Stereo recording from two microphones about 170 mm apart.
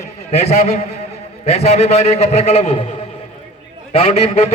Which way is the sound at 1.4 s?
40° left (ahead or behind).